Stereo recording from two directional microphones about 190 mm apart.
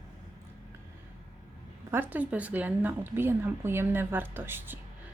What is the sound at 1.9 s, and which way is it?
Speech, 10° right (ahead or behind).